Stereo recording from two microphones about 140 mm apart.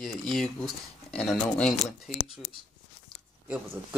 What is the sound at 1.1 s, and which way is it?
Speech, 5° left (ahead or behind).